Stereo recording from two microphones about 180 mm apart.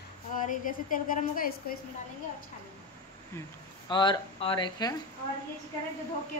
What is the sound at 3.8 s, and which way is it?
Speech, 25° left (ahead or behind).